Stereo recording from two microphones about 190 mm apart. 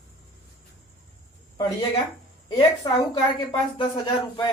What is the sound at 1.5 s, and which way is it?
A woman's voice, 20° left (ahead or behind).